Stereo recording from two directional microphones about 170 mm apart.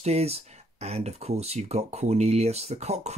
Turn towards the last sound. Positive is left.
turn(degrees=-40)  # may be behind; listen again after turning